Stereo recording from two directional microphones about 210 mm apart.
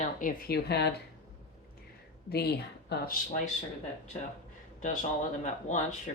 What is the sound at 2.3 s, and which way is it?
Speech, 50° left (ahead or behind).